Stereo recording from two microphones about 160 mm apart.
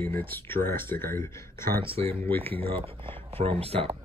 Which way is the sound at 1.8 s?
35° right (ahead or behind).